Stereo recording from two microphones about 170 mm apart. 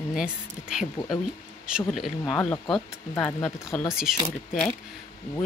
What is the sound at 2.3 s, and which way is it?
Speech, 15° left (ahead or behind).